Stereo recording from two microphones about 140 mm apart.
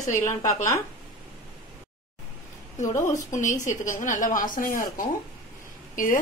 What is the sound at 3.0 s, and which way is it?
A woman's voice, 60° left (ahead or behind).